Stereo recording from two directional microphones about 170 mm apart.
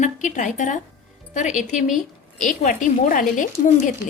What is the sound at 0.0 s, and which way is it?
A woman's voice, 45° left (ahead or behind).